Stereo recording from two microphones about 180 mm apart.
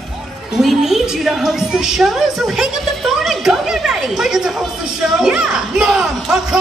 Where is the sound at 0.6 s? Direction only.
Centre (ahead or behind).